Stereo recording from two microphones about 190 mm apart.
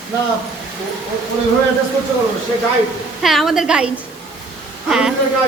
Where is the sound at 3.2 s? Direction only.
Centre (ahead or behind).